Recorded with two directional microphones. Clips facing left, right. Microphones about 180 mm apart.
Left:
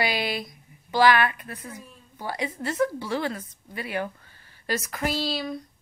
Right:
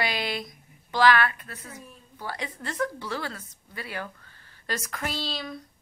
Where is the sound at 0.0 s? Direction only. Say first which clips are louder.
Left 3 dB; 5° left (ahead or behind).